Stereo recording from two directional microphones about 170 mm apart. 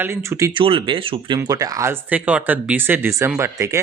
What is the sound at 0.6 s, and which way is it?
Speech, 30° right (ahead or behind).